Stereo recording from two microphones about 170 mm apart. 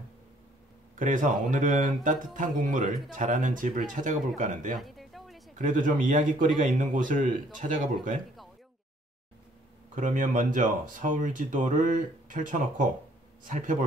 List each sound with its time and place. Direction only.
0.9 s speech: 50° right (ahead or behind)
4.7 s a sound: centre (ahead or behind)
5.6 s speech: 50° right (ahead or behind)
9.9 s speech: 50° right (ahead or behind)